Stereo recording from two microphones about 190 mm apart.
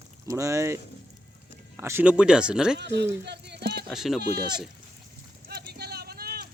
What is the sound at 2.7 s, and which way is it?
Speech, 65° right (ahead or behind).